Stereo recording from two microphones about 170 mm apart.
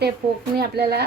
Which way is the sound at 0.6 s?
70° right (ahead or behind).